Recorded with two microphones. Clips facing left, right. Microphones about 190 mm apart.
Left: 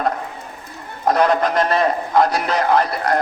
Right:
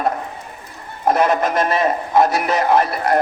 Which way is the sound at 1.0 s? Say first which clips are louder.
Even; 10° right (ahead or behind).